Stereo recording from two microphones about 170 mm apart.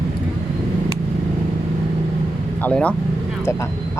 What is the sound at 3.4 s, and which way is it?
Vehicle, 15° left (ahead or behind).